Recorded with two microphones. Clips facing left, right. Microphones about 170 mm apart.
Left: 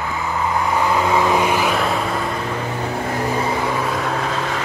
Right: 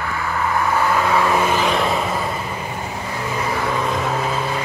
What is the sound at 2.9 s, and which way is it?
Vehicle, 55° left (ahead or behind).